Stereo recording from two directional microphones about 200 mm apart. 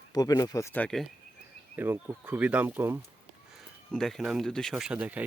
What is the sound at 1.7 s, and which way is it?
Speech, 10° right (ahead or behind).